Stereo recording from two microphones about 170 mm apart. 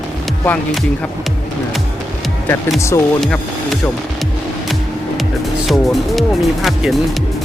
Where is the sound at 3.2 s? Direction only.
Centre (ahead or behind).